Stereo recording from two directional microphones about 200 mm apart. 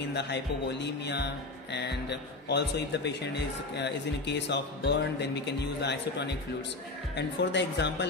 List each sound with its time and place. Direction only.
0.1 s speech: 60° left (ahead or behind)